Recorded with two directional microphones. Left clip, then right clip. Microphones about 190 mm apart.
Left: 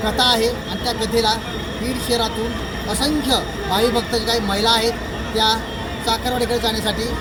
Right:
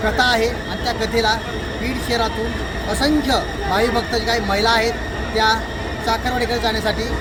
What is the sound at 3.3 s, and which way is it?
Speech, 15° right (ahead or behind).